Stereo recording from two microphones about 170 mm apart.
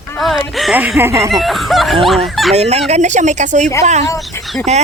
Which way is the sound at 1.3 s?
Centre (ahead or behind).